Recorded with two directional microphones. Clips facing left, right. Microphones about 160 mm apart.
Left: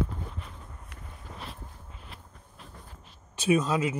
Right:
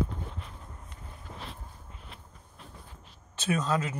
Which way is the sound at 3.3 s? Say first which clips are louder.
Left 4 dB; 10° left (ahead or behind).